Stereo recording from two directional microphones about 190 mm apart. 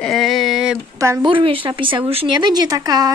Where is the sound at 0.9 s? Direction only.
15° right (ahead or behind).